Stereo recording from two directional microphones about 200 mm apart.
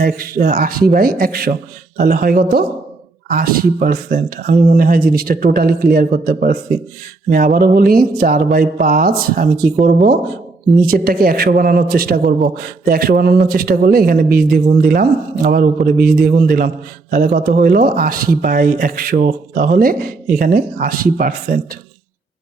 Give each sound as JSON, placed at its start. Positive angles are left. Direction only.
{"t": 0.0, "sound": "speech", "side_deg": -45}